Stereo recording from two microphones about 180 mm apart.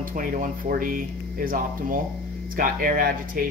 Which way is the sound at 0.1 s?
50° right (ahead or behind).